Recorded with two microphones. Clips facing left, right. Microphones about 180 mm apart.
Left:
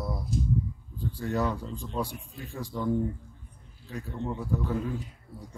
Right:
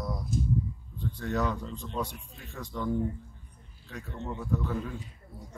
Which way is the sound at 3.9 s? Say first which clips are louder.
Left 4 dB; 10° left (ahead or behind).